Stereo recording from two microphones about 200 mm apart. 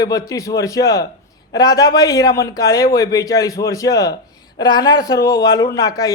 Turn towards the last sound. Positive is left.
turn(degrees=20)  # may be behind; listen again after turning